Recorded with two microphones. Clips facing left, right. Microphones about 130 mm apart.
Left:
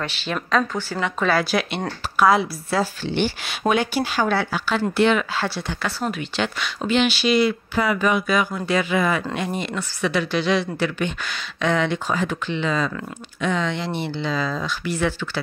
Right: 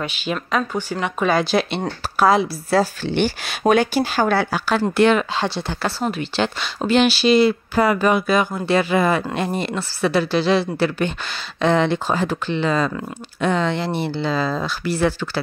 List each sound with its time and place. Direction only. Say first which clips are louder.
0.0 s speech: right 2 dB; 15° right (ahead or behind); by 2.9 s 30° right (ahead or behind)
3.1 s speech: right 3 dB; 45° right (ahead or behind)
5.7 s speech: right 3 dB; 30° right (ahead or behind)